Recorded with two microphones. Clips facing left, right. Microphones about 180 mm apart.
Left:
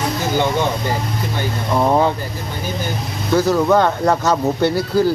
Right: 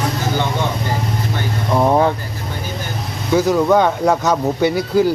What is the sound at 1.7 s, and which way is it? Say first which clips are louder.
Speech: right 1 dB; 10° right (ahead or behind).